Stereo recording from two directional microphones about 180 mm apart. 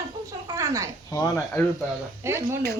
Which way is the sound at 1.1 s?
10° left (ahead or behind).